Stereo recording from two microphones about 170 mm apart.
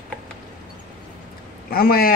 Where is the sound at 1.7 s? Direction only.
60° left (ahead or behind).